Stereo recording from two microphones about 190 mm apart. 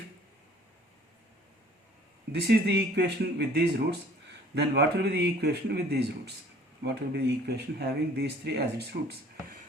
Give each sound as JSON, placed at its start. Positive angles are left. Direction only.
{"t": 2.3, "sound": "speech", "side_deg": -60}